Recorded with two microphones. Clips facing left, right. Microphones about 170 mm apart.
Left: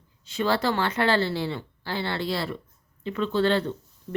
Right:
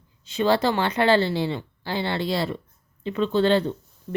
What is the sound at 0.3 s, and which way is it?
Speech, 20° right (ahead or behind).